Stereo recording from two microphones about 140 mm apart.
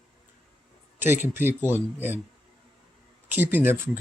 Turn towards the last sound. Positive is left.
turn(degrees=-15)  # may be behind; listen again after turning